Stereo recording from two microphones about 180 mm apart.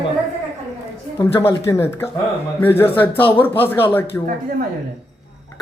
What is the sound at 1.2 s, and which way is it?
Speech, 15° left (ahead or behind).